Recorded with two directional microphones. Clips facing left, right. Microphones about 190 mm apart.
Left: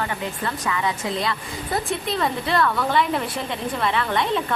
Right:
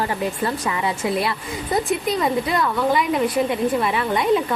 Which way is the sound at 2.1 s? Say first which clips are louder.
Left 2 dB; 10° right (ahead or behind).